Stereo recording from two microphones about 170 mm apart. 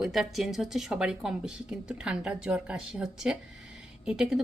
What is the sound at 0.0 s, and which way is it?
Speech, centre (ahead or behind).